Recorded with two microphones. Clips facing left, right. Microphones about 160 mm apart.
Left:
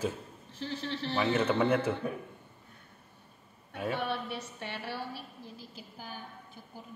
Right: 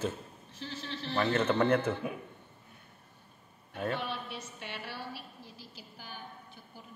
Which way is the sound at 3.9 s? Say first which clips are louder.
Left 4 dB; 60° left (ahead or behind).